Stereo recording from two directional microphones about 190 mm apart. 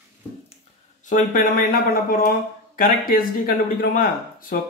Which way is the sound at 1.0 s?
45° left (ahead or behind).